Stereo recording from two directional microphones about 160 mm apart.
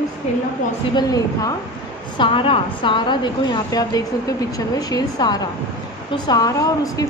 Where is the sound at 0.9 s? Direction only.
25° left (ahead or behind).